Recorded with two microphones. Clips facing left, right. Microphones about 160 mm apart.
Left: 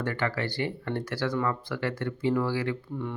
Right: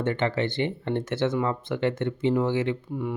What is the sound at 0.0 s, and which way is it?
Speech, 25° right (ahead or behind).